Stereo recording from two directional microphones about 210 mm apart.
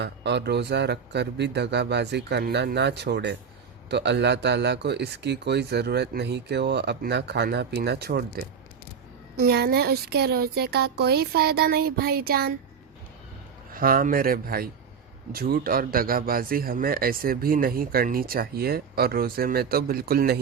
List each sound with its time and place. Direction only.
0.0 s speech: 55° right (ahead or behind)
13.7 s speech: 40° right (ahead or behind)